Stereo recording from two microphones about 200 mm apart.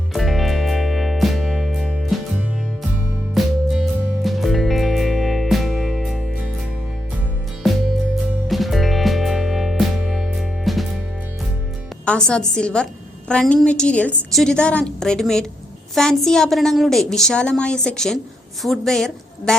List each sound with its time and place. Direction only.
0.1 s music: centre (ahead or behind)
3.4 s music: centre (ahead or behind)
7.6 s music: centre (ahead or behind)
12.0 s a woman's voice: 5° left (ahead or behind)